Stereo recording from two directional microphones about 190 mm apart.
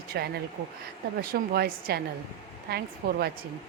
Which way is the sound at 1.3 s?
55° right (ahead or behind).